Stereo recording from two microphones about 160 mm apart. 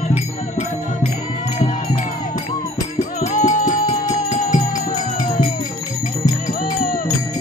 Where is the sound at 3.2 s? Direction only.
45° left (ahead or behind).